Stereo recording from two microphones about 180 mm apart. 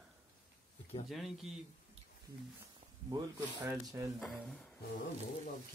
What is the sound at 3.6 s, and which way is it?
Speech, 20° right (ahead or behind).